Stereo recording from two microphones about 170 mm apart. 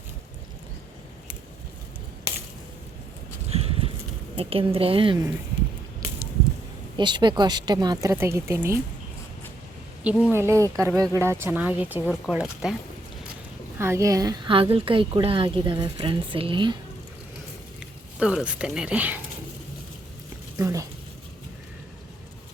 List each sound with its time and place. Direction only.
3.5 s horse: 35° right (ahead or behind)
4.4 s a woman's voice: 35° right (ahead or behind)
6.9 s speech: 25° right (ahead or behind)
10.0 s speech: 5° right (ahead or behind)
13.7 s speech: 15° right (ahead or behind)
17.7 s speech: 5° right (ahead or behind)
20.6 s speech: 20° right (ahead or behind)